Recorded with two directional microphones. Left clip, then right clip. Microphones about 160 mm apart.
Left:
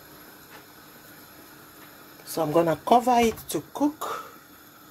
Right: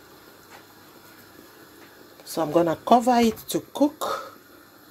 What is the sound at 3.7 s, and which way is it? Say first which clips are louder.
Speech: right 4 dB; 50° right (ahead or behind).